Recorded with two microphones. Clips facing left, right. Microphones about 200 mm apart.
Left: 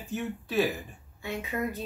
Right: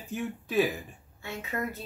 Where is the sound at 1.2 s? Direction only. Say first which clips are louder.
Left 2 dB; 15° left (ahead or behind).